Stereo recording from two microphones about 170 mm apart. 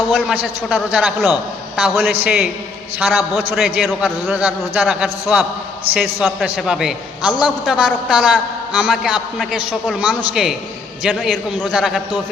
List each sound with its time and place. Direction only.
0.1 s a man's voice: centre (ahead or behind)
3.5 s a man's voice: centre (ahead or behind)